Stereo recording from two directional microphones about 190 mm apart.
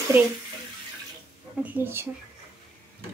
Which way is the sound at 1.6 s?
10° right (ahead or behind).